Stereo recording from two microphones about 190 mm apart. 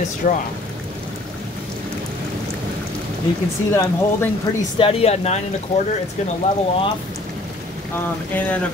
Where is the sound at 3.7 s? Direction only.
10° left (ahead or behind).